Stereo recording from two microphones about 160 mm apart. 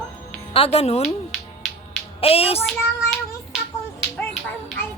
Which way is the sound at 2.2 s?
40° left (ahead or behind).